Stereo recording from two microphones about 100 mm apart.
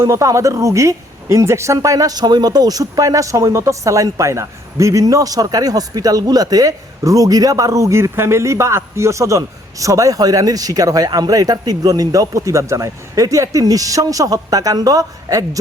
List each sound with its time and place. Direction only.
0.0 s speech: 30° right (ahead or behind)